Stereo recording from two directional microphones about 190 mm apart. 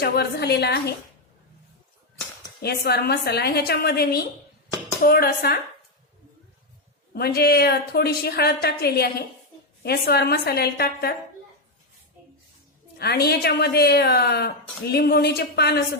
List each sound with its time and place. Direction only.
0.0 s a woman's voice: 55° left (ahead or behind)
2.6 s a woman's voice: 55° left (ahead or behind)
7.1 s a woman's voice: 55° left (ahead or behind)
13.0 s a woman's voice: 55° left (ahead or behind)